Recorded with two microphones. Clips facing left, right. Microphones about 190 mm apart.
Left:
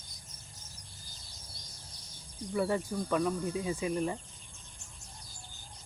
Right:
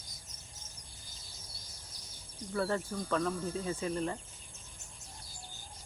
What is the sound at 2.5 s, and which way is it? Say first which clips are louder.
Speech: left 2 dB; 15° left (ahead or behind).